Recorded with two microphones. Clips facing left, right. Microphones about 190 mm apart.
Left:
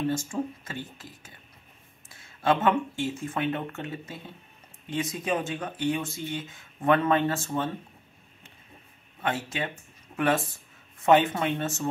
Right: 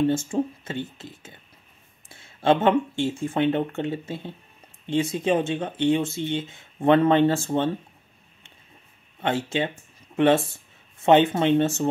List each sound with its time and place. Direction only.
0.1 s speech: 25° right (ahead or behind)
9.2 s speech: 25° right (ahead or behind)